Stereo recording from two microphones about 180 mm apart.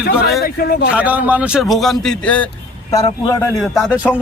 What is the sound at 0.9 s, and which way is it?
A man's voice, 10° right (ahead or behind).